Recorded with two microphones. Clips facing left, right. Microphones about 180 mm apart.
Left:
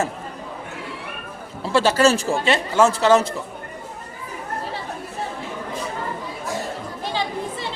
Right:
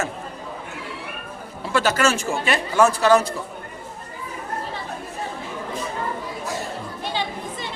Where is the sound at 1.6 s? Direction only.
30° left (ahead or behind).